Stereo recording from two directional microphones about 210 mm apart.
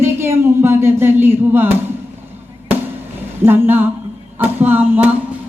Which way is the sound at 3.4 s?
10° right (ahead or behind).